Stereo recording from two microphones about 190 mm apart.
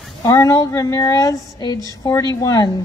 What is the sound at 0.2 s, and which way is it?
A woman's voice, 20° left (ahead or behind).